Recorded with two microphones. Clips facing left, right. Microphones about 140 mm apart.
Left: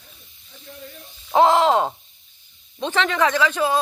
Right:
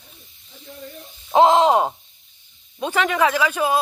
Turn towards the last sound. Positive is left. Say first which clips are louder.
# even
turn(degrees=-10)  # may be behind; listen again after turning